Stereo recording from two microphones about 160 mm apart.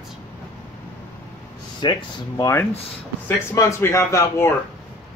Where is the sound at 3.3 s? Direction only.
20° left (ahead or behind).